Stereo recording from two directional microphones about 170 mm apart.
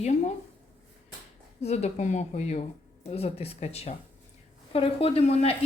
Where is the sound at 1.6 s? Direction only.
40° left (ahead or behind).